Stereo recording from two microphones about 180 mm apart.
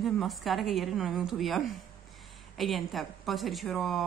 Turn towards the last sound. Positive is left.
turn(degrees=0)  # may be behind; listen again after turning